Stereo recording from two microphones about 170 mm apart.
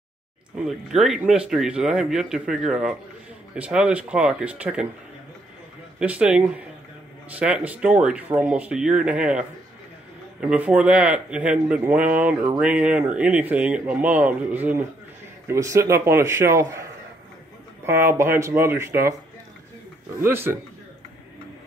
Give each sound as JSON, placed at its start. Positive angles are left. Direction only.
{"t": 0.7, "sound": "speech", "side_deg": 0}
{"t": 5.9, "sound": "speech", "side_deg": -5}
{"t": 17.8, "sound": "speech", "side_deg": -15}
{"t": 20.2, "sound": "speech", "side_deg": -15}